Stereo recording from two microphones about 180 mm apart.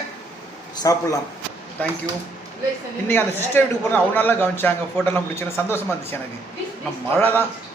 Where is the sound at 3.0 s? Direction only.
10° left (ahead or behind).